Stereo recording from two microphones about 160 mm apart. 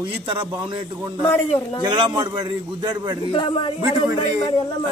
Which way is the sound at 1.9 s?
30° right (ahead or behind).